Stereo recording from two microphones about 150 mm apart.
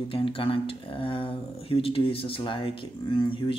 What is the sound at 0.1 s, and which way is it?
Speech, 35° left (ahead or behind).